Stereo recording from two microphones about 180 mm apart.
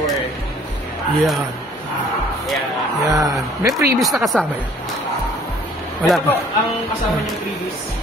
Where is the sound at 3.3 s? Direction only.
20° right (ahead or behind).